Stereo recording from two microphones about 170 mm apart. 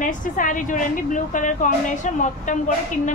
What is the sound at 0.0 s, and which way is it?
A woman's voice, 50° left (ahead or behind).